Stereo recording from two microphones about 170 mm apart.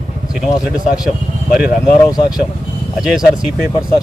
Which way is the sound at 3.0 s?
5° right (ahead or behind).